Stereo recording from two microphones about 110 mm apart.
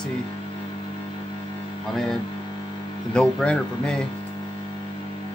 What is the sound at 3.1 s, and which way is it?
Speech, 10° left (ahead or behind).